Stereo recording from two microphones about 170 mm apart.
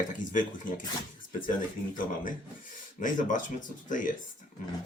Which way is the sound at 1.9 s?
50° left (ahead or behind).